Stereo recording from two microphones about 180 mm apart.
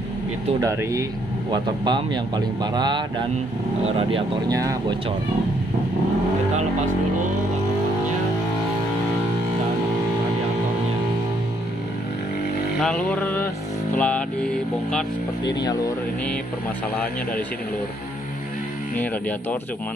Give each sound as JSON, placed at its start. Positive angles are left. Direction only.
{"t": 0.6, "sound": "speech", "side_deg": -15}
{"t": 4.5, "sound": "speech", "side_deg": -20}
{"t": 12.8, "sound": "music", "side_deg": 5}
{"t": 15.4, "sound": "speech", "side_deg": 20}